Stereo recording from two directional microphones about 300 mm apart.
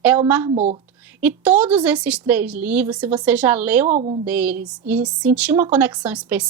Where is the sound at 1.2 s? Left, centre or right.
Centre.